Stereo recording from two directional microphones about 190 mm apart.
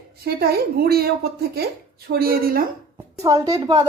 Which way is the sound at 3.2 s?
20° right (ahead or behind).